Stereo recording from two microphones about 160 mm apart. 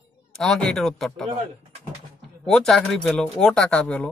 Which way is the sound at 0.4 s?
5° left (ahead or behind).